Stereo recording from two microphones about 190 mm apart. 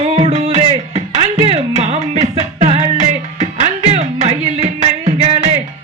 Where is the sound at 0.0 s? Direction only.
35° right (ahead or behind).